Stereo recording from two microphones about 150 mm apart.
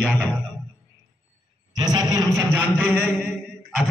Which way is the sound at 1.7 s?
25° right (ahead or behind).